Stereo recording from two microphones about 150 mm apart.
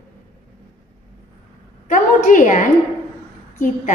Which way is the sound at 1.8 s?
60° left (ahead or behind).